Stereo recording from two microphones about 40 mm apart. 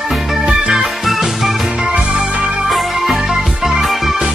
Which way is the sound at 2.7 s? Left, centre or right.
Centre.